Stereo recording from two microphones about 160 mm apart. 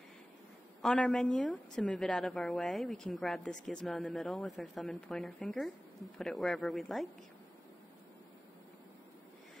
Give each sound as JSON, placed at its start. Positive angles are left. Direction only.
{"t": 0.8, "sound": "a woman's voice", "side_deg": 0}